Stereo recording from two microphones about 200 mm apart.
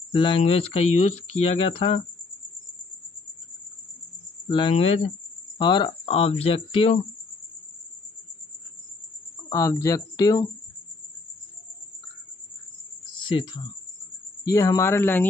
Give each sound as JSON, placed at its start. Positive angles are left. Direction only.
{"t": 0.1, "sound": "speech", "side_deg": 25}
{"t": 4.5, "sound": "speech", "side_deg": 25}
{"t": 9.5, "sound": "speech", "side_deg": 15}
{"t": 13.3, "sound": "speech", "side_deg": 25}